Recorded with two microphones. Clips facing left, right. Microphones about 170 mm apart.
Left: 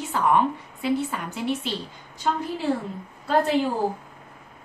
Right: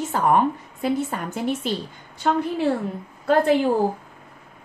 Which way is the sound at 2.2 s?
60° right (ahead or behind).